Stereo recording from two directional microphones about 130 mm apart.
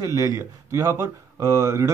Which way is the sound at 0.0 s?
30° right (ahead or behind).